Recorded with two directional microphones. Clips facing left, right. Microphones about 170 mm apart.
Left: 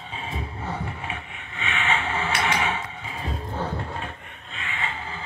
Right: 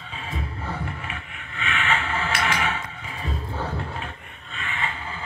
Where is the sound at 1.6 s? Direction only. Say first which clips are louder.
Even; 60° right (ahead or behind).